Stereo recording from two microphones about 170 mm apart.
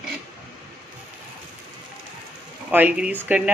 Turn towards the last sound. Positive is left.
turn(degrees=-5)  # may be behind; listen again after turning